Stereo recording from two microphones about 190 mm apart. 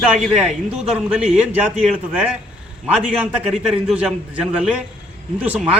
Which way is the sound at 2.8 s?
5° right (ahead or behind).